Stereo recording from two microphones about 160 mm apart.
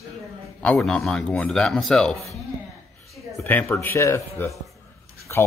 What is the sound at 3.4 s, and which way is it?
Speech, 15° left (ahead or behind).